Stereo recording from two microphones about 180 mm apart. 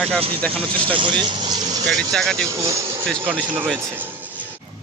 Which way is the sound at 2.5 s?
15° right (ahead or behind).